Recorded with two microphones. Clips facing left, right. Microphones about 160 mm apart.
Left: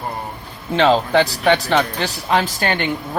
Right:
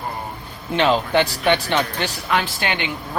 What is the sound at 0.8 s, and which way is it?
A woman's voice, 35° left (ahead or behind).